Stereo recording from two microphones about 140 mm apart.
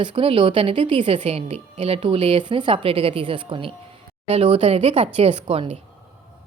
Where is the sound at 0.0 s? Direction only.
35° right (ahead or behind).